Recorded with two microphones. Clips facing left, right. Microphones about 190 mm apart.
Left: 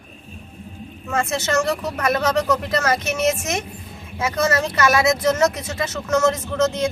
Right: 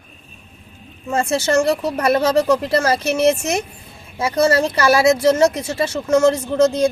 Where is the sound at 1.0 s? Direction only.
30° right (ahead or behind).